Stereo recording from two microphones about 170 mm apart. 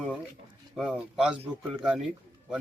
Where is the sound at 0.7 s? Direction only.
5° right (ahead or behind).